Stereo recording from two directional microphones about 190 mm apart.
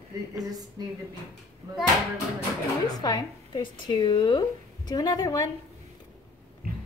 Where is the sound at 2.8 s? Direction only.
20° left (ahead or behind).